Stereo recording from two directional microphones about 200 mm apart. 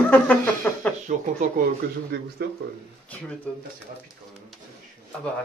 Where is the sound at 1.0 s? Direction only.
35° right (ahead or behind).